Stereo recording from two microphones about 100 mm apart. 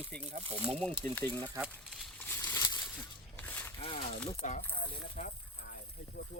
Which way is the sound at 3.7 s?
60° left (ahead or behind).